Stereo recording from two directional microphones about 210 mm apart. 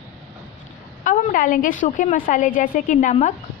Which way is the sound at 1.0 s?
40° left (ahead or behind).